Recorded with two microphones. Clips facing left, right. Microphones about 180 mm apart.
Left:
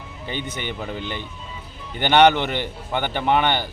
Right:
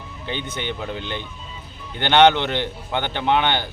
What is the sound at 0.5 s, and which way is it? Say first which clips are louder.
A man's voice: right 1 dB; 10° left (ahead or behind).